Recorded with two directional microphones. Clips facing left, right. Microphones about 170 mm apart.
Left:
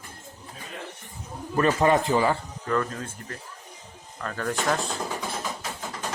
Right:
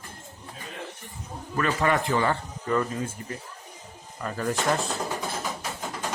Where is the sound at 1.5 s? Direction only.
30° left (ahead or behind).